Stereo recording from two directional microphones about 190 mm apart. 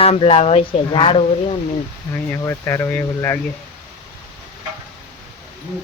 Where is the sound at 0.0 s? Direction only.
30° left (ahead or behind).